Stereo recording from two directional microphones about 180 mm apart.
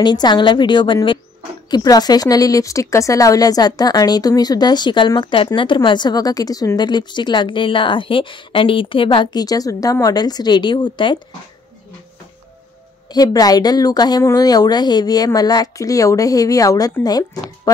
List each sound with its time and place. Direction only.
0.0 s speech: 25° left (ahead or behind)
13.1 s speech: 20° left (ahead or behind)